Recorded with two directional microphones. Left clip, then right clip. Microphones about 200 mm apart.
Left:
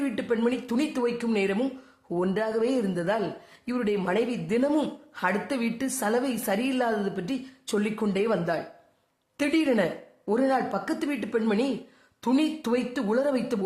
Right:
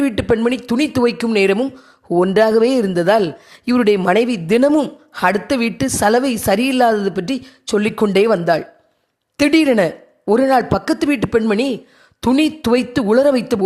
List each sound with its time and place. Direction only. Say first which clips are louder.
0.0 s a woman's voice: right 11 dB; 40° right (ahead or behind)
1.5 s speech: right 9 dB; 30° right (ahead or behind)
2.1 s a woman's voice: right 14 dB; 45° right (ahead or behind)